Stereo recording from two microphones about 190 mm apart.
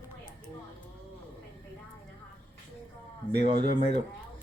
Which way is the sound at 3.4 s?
25° right (ahead or behind).